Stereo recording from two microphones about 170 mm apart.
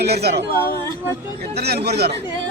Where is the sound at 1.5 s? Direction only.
70° right (ahead or behind).